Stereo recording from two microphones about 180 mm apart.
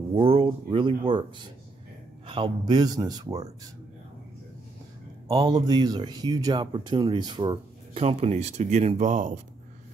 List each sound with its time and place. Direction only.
0.1 s speech: 30° right (ahead or behind)
5.3 s speech: 20° right (ahead or behind); by 9.4 s 40° right (ahead or behind)